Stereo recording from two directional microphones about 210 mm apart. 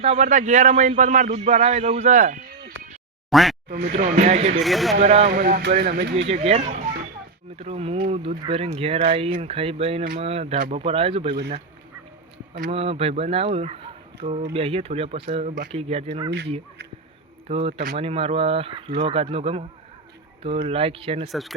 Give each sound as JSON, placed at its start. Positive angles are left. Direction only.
{"t": 0.0, "sound": "speech", "side_deg": -30}
{"t": 3.2, "sound": "speech", "side_deg": 0}
{"t": 3.7, "sound": "speech", "side_deg": -35}
{"t": 4.6, "sound": "speech", "side_deg": 0}
{"t": 4.9, "sound": "speech", "side_deg": -30}
{"t": 6.2, "sound": "speech", "side_deg": -30}
{"t": 12.7, "sound": "speech", "side_deg": -30}
{"t": 17.5, "sound": "speech", "side_deg": -30}
{"t": 20.7, "sound": "speech", "side_deg": -25}
{"t": 21.2, "sound": "speech", "side_deg": 0}